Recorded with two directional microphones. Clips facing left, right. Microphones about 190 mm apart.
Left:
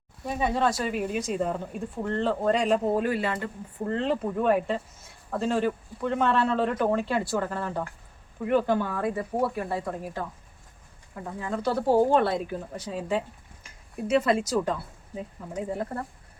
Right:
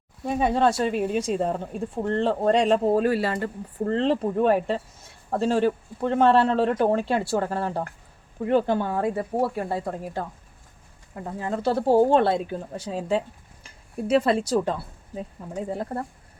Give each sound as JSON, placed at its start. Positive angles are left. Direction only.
{"t": 0.3, "sound": "speech", "side_deg": -30}